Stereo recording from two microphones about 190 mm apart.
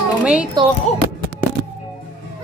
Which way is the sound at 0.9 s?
35° left (ahead or behind).